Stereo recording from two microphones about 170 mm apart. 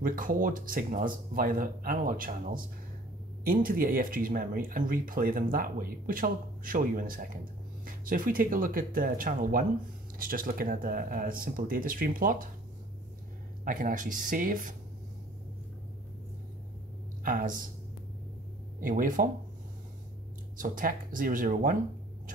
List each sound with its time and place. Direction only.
0.0 s speech: 55° right (ahead or behind)
13.7 s speech: 50° right (ahead or behind)
17.2 s speech: 55° right (ahead or behind)
18.8 s speech: 55° right (ahead or behind)
20.5 s speech: 50° right (ahead or behind)